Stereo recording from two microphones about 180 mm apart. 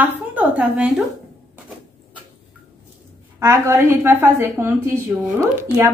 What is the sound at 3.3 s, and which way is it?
Speech, 15° right (ahead or behind).